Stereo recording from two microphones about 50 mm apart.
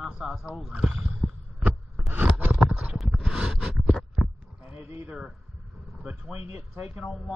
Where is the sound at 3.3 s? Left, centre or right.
Centre.